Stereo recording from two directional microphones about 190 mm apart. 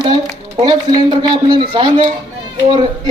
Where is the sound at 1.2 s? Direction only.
25° right (ahead or behind).